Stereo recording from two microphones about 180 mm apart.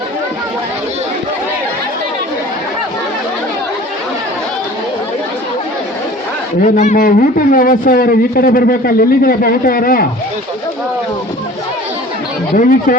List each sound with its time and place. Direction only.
6.6 s a man's voice: 45° left (ahead or behind)
12.5 s a man's voice: 50° left (ahead or behind)